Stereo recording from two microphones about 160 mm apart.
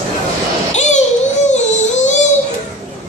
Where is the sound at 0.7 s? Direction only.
45° left (ahead or behind).